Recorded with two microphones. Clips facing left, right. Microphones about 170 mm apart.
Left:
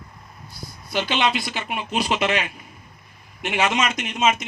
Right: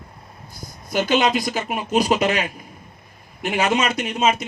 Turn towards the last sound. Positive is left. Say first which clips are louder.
# right 2 dB
turn(degrees=-35)  # may be behind; listen again after turning